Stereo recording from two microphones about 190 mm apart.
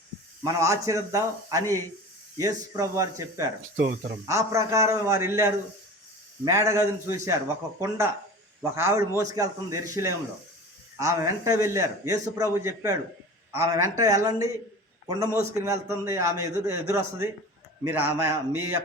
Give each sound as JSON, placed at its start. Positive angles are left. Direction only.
{"t": 0.4, "sound": "a man's voice", "side_deg": -15}
{"t": 3.8, "sound": "speech", "side_deg": -55}
{"t": 4.3, "sound": "a man's voice", "side_deg": -15}